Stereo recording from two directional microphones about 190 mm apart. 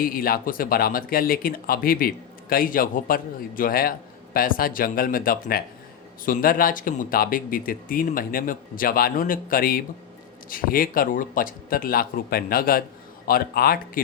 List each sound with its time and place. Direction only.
0.0 s speech: 50° left (ahead or behind)